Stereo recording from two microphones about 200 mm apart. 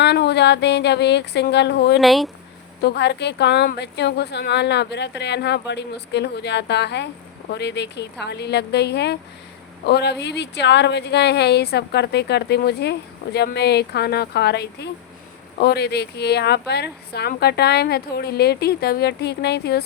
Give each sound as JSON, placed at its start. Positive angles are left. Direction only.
{"t": 0.0, "sound": "a woman's voice", "side_deg": 60}
{"t": 2.0, "sound": "speech", "side_deg": 0}
{"t": 2.8, "sound": "a woman's voice", "side_deg": 55}